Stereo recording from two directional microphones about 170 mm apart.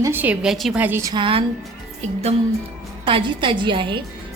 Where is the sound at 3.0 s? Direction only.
30° right (ahead or behind).